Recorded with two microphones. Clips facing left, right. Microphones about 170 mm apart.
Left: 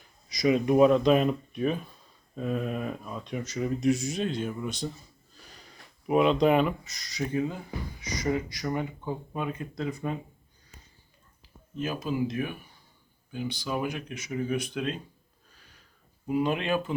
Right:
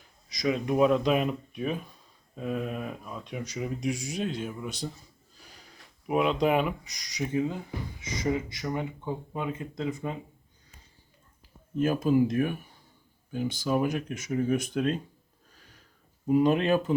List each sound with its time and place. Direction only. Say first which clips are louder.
0.3 s speech: left 4 dB; 5° left (ahead or behind); by 10.2 s 20° right (ahead or behind)
11.8 s speech: right 6 dB; 50° right (ahead or behind)
16.3 s speech: right 4 dB; 40° right (ahead or behind)